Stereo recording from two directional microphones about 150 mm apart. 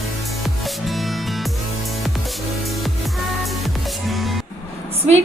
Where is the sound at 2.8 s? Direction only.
Centre (ahead or behind).